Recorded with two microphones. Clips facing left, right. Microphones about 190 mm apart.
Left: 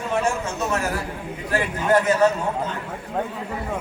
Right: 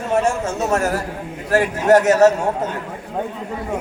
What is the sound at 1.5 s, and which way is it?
Speech, 70° right (ahead or behind).